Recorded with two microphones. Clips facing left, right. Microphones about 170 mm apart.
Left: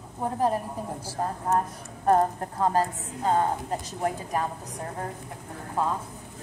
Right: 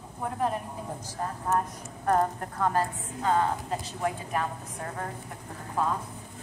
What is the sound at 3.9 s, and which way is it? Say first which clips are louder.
Speech: left 2 dB; 40° left (ahead or behind).